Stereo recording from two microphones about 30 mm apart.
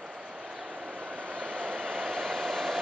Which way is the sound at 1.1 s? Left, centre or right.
Left.